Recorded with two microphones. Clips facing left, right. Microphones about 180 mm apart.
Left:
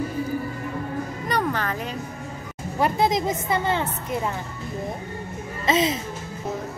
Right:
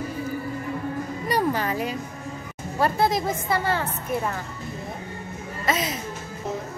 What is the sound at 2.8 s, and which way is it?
A woman's voice, 20° left (ahead or behind).